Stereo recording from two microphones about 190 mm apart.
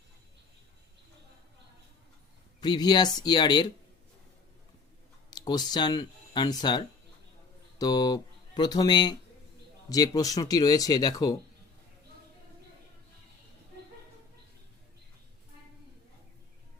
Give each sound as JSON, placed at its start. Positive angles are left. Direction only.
{"t": 2.6, "sound": "speech", "side_deg": 20}
{"t": 5.3, "sound": "speech", "side_deg": 20}